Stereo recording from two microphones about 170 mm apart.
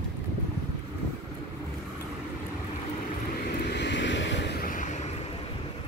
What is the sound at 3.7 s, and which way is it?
Vehicle, 90° left.